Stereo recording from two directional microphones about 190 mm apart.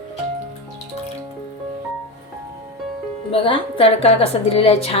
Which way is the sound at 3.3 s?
30° left (ahead or behind).